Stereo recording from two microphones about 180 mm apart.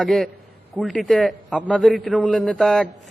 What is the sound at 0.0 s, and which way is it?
Speech, centre (ahead or behind).